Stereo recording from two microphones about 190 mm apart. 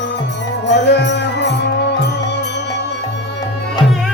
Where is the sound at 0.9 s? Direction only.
65° left (ahead or behind).